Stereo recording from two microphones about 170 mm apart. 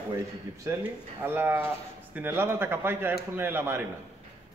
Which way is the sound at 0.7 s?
15° right (ahead or behind).